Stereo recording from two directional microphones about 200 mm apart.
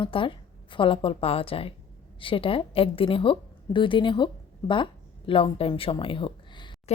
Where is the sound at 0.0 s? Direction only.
25° left (ahead or behind).